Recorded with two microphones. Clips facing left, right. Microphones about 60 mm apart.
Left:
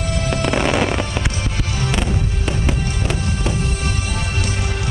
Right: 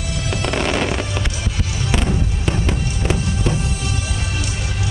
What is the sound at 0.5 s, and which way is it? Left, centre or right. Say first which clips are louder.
Music: left 2 dB; centre.